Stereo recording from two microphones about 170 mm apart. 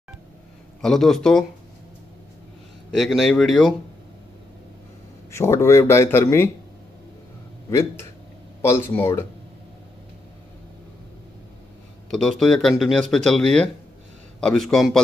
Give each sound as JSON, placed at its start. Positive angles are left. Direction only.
{"t": 0.7, "sound": "speech", "side_deg": 0}
{"t": 2.9, "sound": "speech", "side_deg": 0}
{"t": 5.3, "sound": "speech", "side_deg": 15}
{"t": 7.7, "sound": "speech", "side_deg": 15}
{"t": 12.1, "sound": "speech", "side_deg": 0}